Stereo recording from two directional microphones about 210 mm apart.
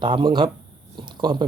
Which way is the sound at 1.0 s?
20° right (ahead or behind).